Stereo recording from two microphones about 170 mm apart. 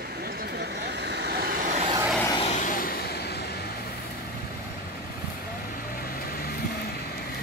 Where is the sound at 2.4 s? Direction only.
45° left (ahead or behind); by 3.4 s 65° left (ahead or behind).